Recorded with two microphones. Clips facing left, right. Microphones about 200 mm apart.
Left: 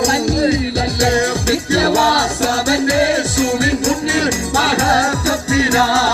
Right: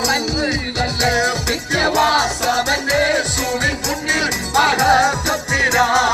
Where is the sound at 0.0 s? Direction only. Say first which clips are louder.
Left 5 dB; 30° left (ahead or behind).